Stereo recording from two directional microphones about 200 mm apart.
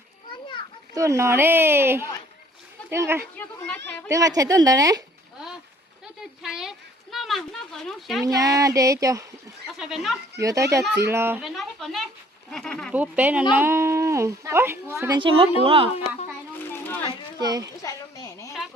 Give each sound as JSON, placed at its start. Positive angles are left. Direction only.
{"t": 0.9, "sound": "a woman's voice", "side_deg": -15}
{"t": 6.4, "sound": "speech", "side_deg": -5}
{"t": 8.2, "sound": "a woman's voice", "side_deg": -15}
{"t": 9.7, "sound": "speech", "side_deg": 0}
{"t": 10.4, "sound": "a woman's voice", "side_deg": -15}
{"t": 12.9, "sound": "a woman's voice", "side_deg": -10}
{"t": 15.2, "sound": "a woman's voice", "side_deg": -25}
{"t": 16.7, "sound": "a sound", "side_deg": 10}
{"t": 17.4, "sound": "a woman's voice", "side_deg": -20}
{"t": 17.8, "sound": "a woman's voice", "side_deg": 15}